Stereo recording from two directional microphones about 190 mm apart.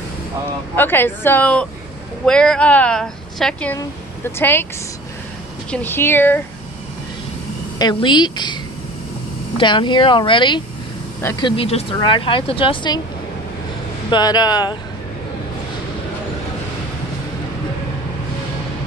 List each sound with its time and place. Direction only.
0.7 s a woman's voice: 10° left (ahead or behind)
5.7 s a woman's voice: 10° left (ahead or behind)
7.8 s speech: 25° left (ahead or behind)
9.6 s speech: 25° left (ahead or behind)
14.1 s speech: 20° left (ahead or behind)